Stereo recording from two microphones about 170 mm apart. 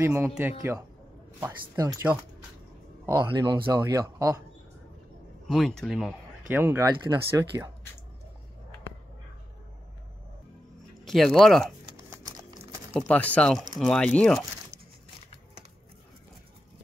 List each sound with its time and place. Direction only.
0.0 s speech: 10° right (ahead or behind)
1.8 s speech: 20° right (ahead or behind)
3.1 s speech: 15° right (ahead or behind)
3.3 s speech: 30° right (ahead or behind)
3.6 s speech: 20° right (ahead or behind)
5.5 s speech: centre (ahead or behind)
6.5 s speech: 10° right (ahead or behind)
11.1 s speech: centre (ahead or behind)
12.9 s speech: 10° left (ahead or behind)